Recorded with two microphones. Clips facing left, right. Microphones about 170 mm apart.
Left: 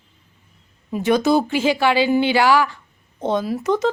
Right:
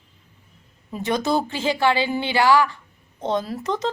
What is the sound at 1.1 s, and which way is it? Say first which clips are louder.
Speech: left 5 dB; 5° left (ahead or behind).